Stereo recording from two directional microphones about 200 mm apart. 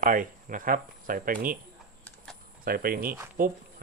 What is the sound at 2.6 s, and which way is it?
Speech, 45° right (ahead or behind).